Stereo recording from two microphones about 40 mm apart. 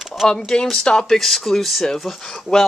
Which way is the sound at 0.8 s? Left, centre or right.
Left.